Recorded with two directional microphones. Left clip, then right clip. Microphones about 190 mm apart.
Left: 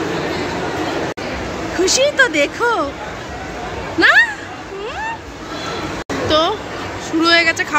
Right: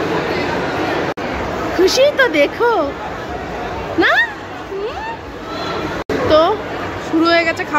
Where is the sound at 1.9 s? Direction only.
5° right (ahead or behind).